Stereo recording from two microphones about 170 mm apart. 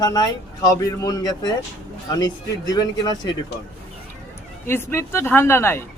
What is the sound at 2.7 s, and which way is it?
Speech, 25° left (ahead or behind).